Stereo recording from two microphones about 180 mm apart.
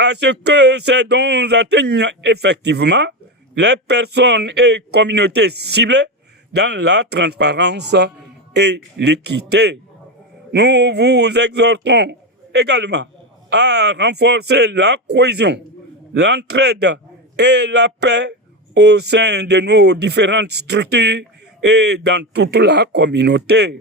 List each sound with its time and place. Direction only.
0.0 s speech: 70° right (ahead or behind)